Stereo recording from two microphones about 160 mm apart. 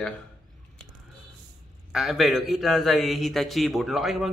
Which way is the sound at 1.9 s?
Centre (ahead or behind).